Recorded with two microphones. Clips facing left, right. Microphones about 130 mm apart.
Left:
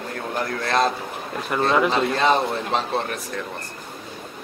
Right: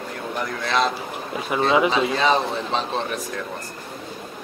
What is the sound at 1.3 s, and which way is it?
Speech, 5° right (ahead or behind).